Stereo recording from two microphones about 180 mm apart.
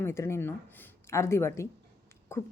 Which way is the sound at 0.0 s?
15° left (ahead or behind).